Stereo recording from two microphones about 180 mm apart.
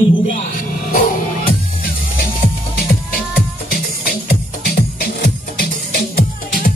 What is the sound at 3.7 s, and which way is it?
Music, 55° left (ahead or behind).